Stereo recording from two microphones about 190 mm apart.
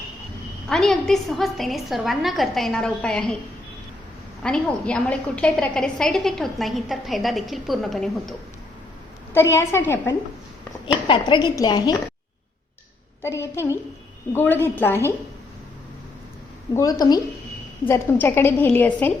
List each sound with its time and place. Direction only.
0.7 s a woman's voice: centre (ahead or behind)
4.4 s a woman's voice: 5° left (ahead or behind)
9.3 s a woman's voice: 15° left (ahead or behind)
11.1 s a woman's voice: 25° left (ahead or behind)
13.2 s a woman's voice: 15° left (ahead or behind)
16.7 s a woman's voice: 20° left (ahead or behind)